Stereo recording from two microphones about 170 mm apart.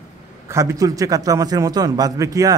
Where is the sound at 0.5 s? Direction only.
15° right (ahead or behind).